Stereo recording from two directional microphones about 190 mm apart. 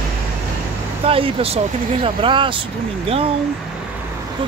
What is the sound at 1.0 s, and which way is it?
Speech, 30° right (ahead or behind).